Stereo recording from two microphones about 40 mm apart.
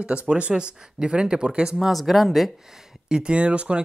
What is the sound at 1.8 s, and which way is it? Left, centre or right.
Speech, centre.